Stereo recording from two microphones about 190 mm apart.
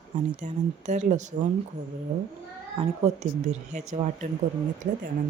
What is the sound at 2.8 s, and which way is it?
Speech, 35° right (ahead or behind).